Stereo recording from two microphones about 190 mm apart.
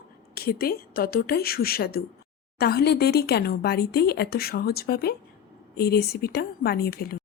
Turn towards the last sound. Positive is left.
turn(degrees=55)  # may be behind; listen again after turning